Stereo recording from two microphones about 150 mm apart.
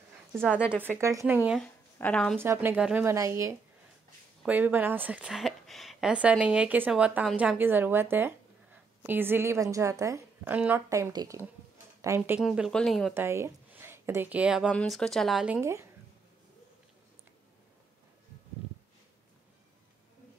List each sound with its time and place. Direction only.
0.8 s speech: 20° right (ahead or behind)
1.6 s speech: 10° left (ahead or behind)
2.4 s a woman's voice: 15° right (ahead or behind)
12.4 s speech: 5° right (ahead or behind)
13.1 s speech: 15° right (ahead or behind)
14.7 s speech: 5° left (ahead or behind); by 15.9 s 15° right (ahead or behind)